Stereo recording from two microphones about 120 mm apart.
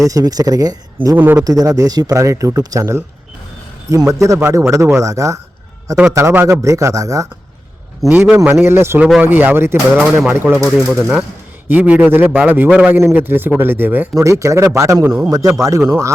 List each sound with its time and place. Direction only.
0.1 s speech: 30° right (ahead or behind)
1.1 s speech: 15° right (ahead or behind)
1.5 s a man's voice: 30° right (ahead or behind)
4.1 s a man's voice: 25° right (ahead or behind)
8.1 s a man's voice: 15° right (ahead or behind)
10.7 s speech: centre (ahead or behind)
11.7 s a man's voice: 15° right (ahead or behind)
15.0 s speech: 10° right (ahead or behind)
15.3 s a man's voice: 30° right (ahead or behind)